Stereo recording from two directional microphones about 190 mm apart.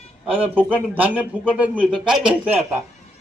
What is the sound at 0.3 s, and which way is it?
A man's voice, 10° right (ahead or behind).